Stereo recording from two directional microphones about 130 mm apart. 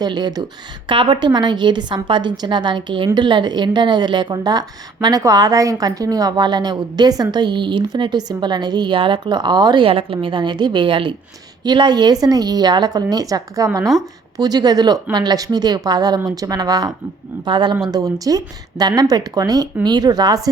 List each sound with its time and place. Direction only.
0.0 s a woman's voice: 35° right (ahead or behind)